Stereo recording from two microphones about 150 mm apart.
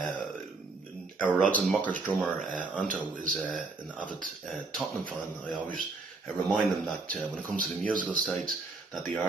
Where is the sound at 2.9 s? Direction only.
60° right (ahead or behind).